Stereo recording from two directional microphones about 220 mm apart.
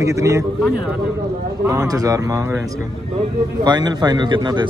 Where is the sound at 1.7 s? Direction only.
15° right (ahead or behind).